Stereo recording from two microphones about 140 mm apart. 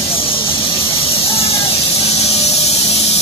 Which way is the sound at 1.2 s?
45° left (ahead or behind).